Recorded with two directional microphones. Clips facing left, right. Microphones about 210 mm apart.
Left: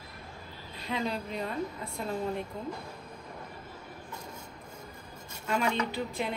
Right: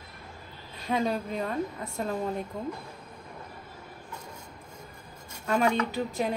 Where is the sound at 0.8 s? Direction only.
45° right (ahead or behind).